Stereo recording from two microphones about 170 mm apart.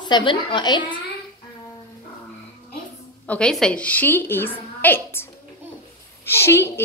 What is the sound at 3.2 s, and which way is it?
A woman's voice, 5° left (ahead or behind).